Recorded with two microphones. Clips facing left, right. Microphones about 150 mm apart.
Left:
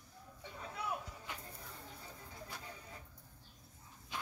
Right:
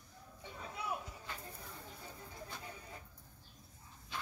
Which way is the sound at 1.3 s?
15° left (ahead or behind).